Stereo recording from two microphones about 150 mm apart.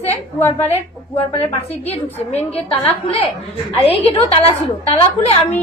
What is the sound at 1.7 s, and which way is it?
Speech, 45° left (ahead or behind).